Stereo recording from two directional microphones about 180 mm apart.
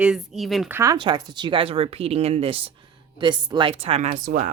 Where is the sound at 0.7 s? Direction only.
15° right (ahead or behind).